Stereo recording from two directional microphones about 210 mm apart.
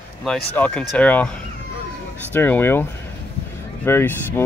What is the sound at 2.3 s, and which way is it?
Speech, 10° left (ahead or behind).